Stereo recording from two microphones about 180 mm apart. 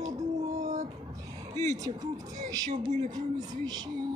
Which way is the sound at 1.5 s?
20° right (ahead or behind).